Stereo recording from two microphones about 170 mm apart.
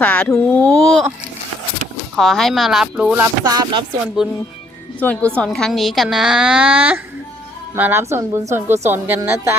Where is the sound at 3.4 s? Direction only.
25° right (ahead or behind).